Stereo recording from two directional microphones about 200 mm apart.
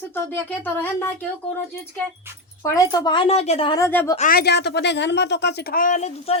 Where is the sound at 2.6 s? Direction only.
15° left (ahead or behind).